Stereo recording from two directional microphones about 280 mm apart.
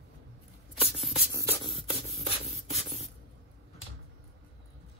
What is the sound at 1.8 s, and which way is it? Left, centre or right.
Rub, right.